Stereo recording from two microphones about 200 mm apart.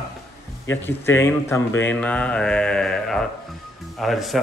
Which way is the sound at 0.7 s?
10° left (ahead or behind).